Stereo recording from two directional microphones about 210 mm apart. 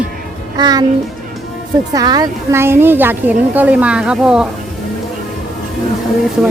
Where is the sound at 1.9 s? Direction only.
20° right (ahead or behind).